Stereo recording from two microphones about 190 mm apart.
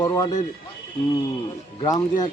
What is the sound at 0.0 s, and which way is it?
Speech, 20° left (ahead or behind).